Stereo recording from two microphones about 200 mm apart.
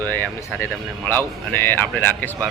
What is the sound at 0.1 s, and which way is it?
Speech, 10° left (ahead or behind).